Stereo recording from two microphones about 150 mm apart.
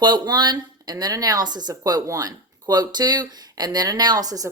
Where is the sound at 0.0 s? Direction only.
30° right (ahead or behind).